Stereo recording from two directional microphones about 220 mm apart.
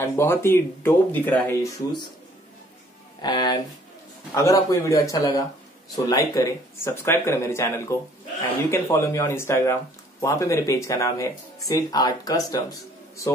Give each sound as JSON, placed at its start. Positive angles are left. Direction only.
{"t": 0.0, "sound": "speech", "side_deg": 10}
{"t": 3.2, "sound": "speech", "side_deg": 20}